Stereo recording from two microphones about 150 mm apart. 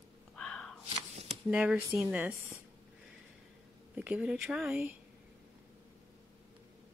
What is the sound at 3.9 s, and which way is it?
Speech, 10° right (ahead or behind).